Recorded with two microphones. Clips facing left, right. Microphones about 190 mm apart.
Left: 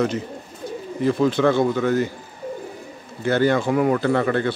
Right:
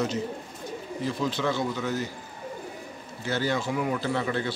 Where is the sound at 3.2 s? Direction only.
55° left (ahead or behind).